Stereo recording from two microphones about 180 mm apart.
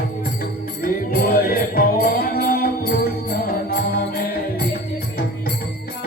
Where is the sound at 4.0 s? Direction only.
55° left (ahead or behind).